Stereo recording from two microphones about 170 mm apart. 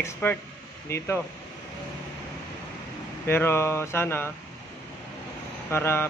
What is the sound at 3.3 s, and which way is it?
Speech, 15° left (ahead or behind).